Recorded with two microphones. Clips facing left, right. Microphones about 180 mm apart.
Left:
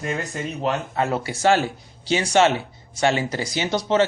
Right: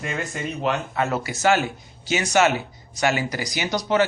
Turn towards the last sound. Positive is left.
turn(degrees=25)  # may be behind; listen again after turning